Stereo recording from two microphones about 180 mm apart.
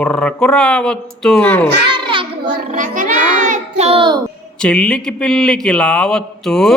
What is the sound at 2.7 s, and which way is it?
Speech, 45° right (ahead or behind).